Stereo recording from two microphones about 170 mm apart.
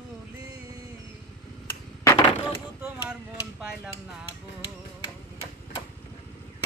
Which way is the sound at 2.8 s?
5° right (ahead or behind).